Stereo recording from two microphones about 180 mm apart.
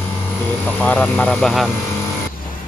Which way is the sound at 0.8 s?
10° left (ahead or behind).